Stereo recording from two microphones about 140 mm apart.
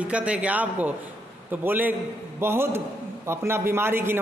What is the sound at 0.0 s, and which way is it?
A man's voice, 10° right (ahead or behind).